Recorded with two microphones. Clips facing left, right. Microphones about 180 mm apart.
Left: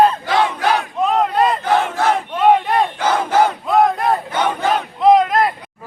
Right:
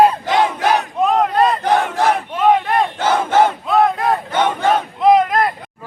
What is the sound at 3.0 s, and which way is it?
Battle cry, 25° right (ahead or behind).